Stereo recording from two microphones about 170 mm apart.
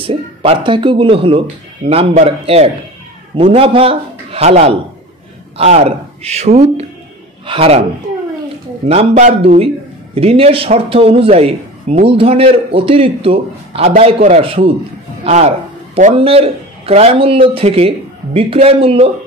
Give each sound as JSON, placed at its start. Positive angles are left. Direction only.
{"t": 0.0, "sound": "a man's voice", "side_deg": -35}
{"t": 8.8, "sound": "a man's voice", "side_deg": -35}